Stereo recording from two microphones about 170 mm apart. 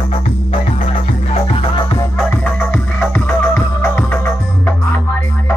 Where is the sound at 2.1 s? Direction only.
5° left (ahead or behind).